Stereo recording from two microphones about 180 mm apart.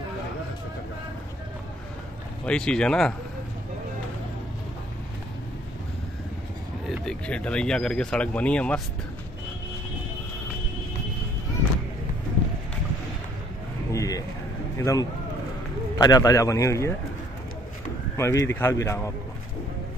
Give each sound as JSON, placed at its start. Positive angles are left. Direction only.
{"t": 2.4, "sound": "speech", "side_deg": 5}
{"t": 6.9, "sound": "speech", "side_deg": 5}
{"t": 13.9, "sound": "a sound", "side_deg": 20}
{"t": 14.8, "sound": "speech", "side_deg": 15}
{"t": 18.1, "sound": "speech", "side_deg": 15}